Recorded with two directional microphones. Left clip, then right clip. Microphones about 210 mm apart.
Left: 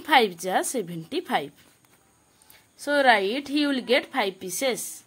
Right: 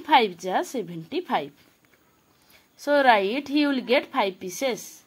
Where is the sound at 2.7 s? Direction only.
Centre (ahead or behind).